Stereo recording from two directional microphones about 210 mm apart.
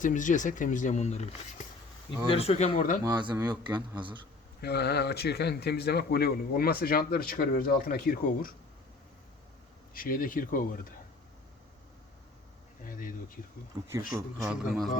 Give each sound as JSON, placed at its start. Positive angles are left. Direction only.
{"t": 0.0, "sound": "speech", "side_deg": 35}
{"t": 2.3, "sound": "speech", "side_deg": 30}
{"t": 3.0, "sound": "speech", "side_deg": -20}
{"t": 4.6, "sound": "speech", "side_deg": 50}
{"t": 9.9, "sound": "speech", "side_deg": 40}
{"t": 12.8, "sound": "speech", "side_deg": 40}
{"t": 14.2, "sound": "a man's voice", "side_deg": -10}